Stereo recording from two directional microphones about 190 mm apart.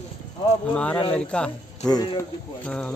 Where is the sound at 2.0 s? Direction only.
20° left (ahead or behind).